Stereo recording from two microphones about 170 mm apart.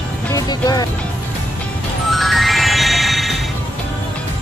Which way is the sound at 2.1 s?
Centre (ahead or behind).